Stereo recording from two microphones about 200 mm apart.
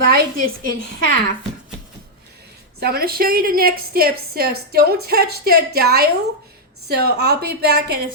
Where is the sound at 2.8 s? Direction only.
50° right (ahead or behind).